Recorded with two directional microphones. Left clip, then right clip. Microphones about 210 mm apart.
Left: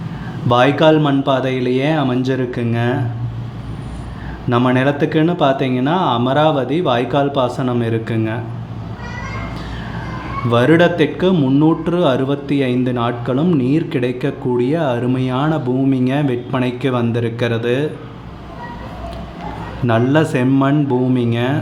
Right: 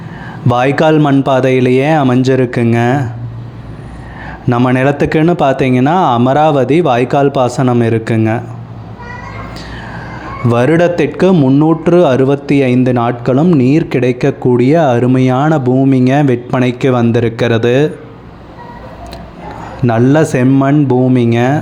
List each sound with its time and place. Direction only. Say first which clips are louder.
0.4 s a man's voice: right 2 dB; 40° right (ahead or behind)
4.4 s a man's voice: right 4 dB; 35° right (ahead or behind)
10.5 s a man's voice: right 2 dB; 35° right (ahead or behind)
19.9 s a man's voice: right 4 dB; 30° right (ahead or behind)